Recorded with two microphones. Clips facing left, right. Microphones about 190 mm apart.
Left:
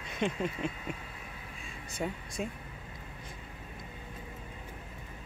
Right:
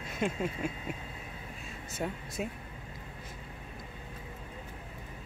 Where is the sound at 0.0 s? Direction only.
5° right (ahead or behind).